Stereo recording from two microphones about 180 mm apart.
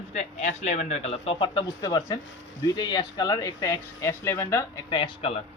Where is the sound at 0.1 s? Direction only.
40° left (ahead or behind); by 4.6 s 15° left (ahead or behind).